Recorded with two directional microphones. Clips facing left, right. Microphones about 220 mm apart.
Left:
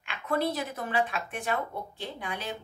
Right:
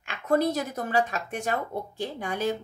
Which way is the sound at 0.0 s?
45° right (ahead or behind).